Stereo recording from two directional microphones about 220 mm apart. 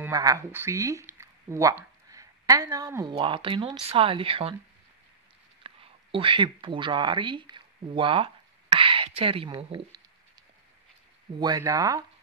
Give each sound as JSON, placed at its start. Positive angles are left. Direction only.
{"t": 0.0, "sound": "speech", "side_deg": -15}
{"t": 5.6, "sound": "speech", "side_deg": -25}
{"t": 11.3, "sound": "speech", "side_deg": -15}